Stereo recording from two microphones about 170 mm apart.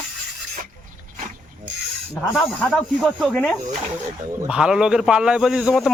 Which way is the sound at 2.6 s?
5° left (ahead or behind).